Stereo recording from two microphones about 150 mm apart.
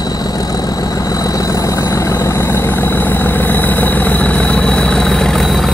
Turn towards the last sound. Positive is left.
turn(degrees=0)  # may be behind; listen again after turning